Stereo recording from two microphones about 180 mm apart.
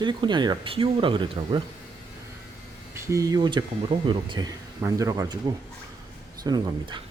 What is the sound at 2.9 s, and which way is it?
Speech, 15° right (ahead or behind).